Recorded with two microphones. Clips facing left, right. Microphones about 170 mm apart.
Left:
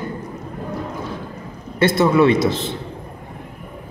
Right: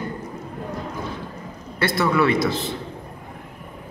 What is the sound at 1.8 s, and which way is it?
Speech, 25° left (ahead or behind).